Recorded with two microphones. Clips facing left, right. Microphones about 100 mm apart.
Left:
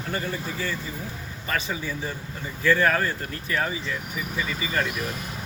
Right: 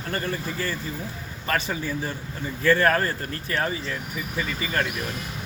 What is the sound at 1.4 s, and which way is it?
Speech, 50° right (ahead or behind).